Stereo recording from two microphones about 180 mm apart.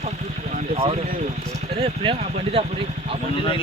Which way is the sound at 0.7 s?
30° right (ahead or behind).